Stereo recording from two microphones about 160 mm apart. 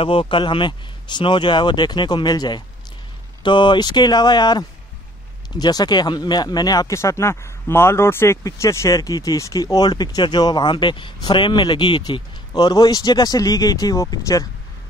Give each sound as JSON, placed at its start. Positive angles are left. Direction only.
{"t": 0.0, "sound": "speech", "side_deg": 35}